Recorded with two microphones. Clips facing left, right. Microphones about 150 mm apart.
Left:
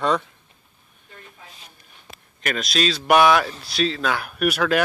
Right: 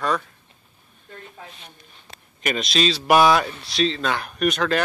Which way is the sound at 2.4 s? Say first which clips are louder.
Right 1 dB; centre (ahead or behind).